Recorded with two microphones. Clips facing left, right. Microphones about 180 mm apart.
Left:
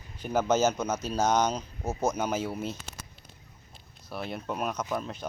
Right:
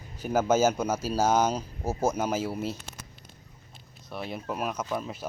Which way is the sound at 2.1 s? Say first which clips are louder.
Right 1 dB; 5° right (ahead or behind).